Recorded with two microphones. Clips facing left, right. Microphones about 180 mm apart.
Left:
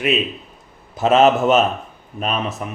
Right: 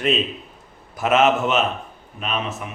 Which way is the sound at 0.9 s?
30° left (ahead or behind).